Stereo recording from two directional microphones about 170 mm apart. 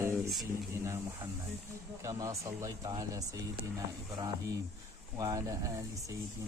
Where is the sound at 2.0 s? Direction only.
20° right (ahead or behind).